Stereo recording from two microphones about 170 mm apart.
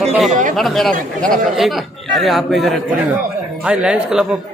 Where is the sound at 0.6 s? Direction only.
Centre (ahead or behind).